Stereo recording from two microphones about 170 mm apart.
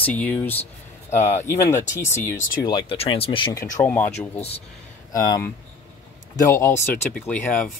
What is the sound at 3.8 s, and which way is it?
Speech, 10° left (ahead or behind).